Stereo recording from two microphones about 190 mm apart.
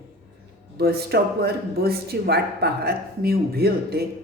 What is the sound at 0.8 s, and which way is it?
A man's voice, 55° right (ahead or behind).